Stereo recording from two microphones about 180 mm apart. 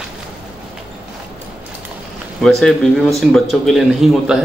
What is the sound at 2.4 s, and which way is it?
Speech, centre (ahead or behind).